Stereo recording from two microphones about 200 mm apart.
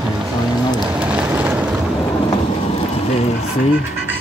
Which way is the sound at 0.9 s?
5° right (ahead or behind).